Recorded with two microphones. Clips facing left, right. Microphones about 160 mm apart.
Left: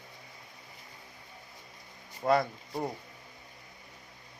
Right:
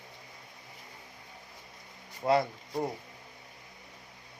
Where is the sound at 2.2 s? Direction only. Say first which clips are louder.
Even; 20° right (ahead or behind).